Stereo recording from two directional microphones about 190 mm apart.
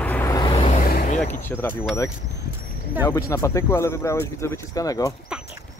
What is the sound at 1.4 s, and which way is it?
Speech, 10° left (ahead or behind).